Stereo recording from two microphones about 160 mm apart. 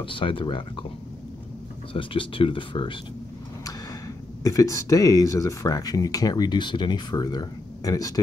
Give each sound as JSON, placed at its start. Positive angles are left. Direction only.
{"t": 0.0, "sound": "speech", "side_deg": 35}
{"t": 2.0, "sound": "speech", "side_deg": 35}
{"t": 4.4, "sound": "speech", "side_deg": 20}